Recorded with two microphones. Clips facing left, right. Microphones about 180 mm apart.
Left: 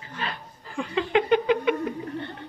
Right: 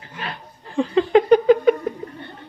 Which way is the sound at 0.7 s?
35° right (ahead or behind).